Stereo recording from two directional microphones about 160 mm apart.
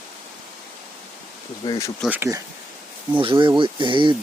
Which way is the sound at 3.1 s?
30° right (ahead or behind).